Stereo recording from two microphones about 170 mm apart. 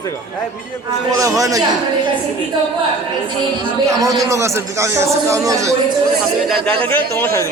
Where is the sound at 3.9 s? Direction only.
20° right (ahead or behind).